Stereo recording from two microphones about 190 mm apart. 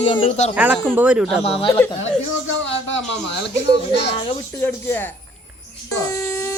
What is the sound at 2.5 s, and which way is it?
Speech, 75° left (ahead or behind).